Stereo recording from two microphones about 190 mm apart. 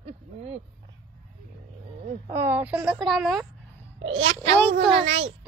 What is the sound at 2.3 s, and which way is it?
A woman's voice, 15° right (ahead or behind).